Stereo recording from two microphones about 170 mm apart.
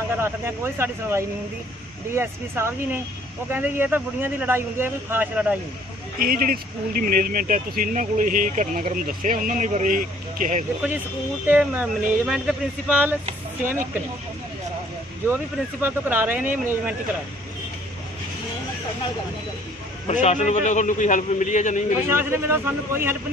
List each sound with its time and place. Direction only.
0.1 s speech: 15° right (ahead or behind)
6.1 s speech: 60° right (ahead or behind)
11.4 s speech: 10° right (ahead or behind)
13.2 s speech: 50° right (ahead or behind)
15.8 s speech: 10° right (ahead or behind)
20.1 s a man's voice: 45° left (ahead or behind)
22.1 s speech: 15° right (ahead or behind)